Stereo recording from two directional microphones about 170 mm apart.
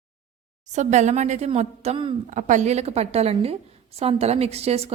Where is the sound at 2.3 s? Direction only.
45° right (ahead or behind).